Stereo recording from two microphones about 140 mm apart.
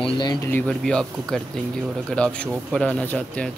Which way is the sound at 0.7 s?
5° left (ahead or behind).